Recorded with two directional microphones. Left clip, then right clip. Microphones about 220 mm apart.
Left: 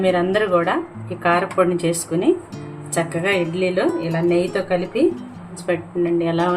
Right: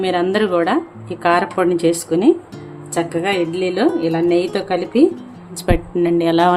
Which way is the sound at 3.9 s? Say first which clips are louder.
Right 4 dB; centre (ahead or behind).